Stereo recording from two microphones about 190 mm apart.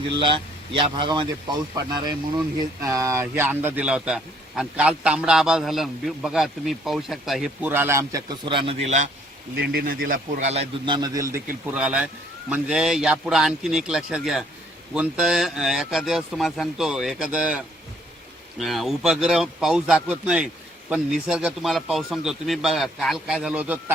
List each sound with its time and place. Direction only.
0.2 s a man's voice: 25° right (ahead or behind)
8.4 s a man's voice: 30° right (ahead or behind)
9.6 s a man's voice: 50° right (ahead or behind); by 11.3 s 20° right (ahead or behind)
11.6 s a man's voice: 5° right (ahead or behind)
18.6 s a man's voice: centre (ahead or behind)